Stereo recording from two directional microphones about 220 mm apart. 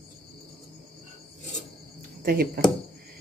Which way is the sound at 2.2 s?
45° right (ahead or behind).